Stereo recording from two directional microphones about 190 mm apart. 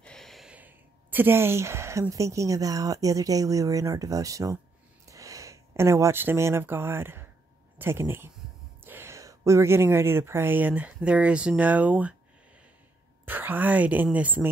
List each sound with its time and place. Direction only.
0.0 s a woman's voice: 5° left (ahead or behind)
13.2 s a woman's voice: 10° right (ahead or behind)